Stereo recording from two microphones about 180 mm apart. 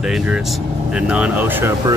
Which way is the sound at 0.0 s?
5° right (ahead or behind).